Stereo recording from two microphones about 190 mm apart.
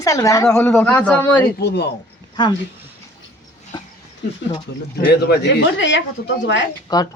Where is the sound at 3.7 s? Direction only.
20° left (ahead or behind).